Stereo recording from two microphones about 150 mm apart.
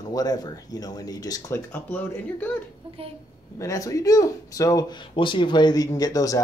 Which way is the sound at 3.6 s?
20° left (ahead or behind).